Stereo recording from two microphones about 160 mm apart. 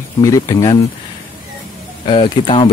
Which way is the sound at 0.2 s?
20° left (ahead or behind).